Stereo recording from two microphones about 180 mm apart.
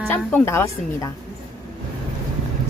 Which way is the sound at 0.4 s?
15° left (ahead or behind).